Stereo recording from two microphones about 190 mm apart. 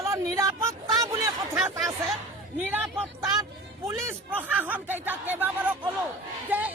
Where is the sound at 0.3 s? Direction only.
15° right (ahead or behind).